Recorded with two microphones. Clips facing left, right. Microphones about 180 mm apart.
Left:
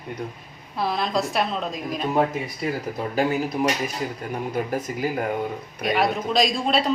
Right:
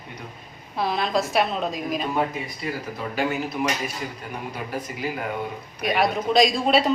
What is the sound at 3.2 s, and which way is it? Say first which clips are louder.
Speech: left 3 dB; 35° left (ahead or behind).